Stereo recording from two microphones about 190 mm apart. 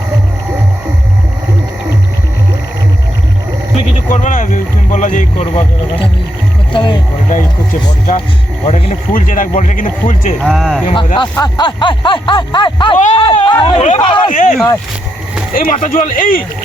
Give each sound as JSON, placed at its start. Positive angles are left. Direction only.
{"t": 3.8, "sound": "speech", "side_deg": 40}
{"t": 6.7, "sound": "speech", "side_deg": 25}
{"t": 7.3, "sound": "speech", "side_deg": 45}
{"t": 8.6, "sound": "speech", "side_deg": 35}
{"t": 10.4, "sound": "speech", "side_deg": 0}
{"t": 10.9, "sound": "speech", "side_deg": 25}
{"t": 14.3, "sound": "speech", "side_deg": 45}